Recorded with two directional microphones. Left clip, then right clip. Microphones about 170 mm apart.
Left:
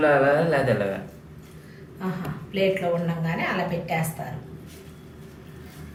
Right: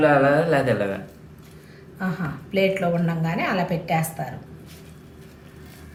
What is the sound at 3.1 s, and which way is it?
Speech, 75° right (ahead or behind).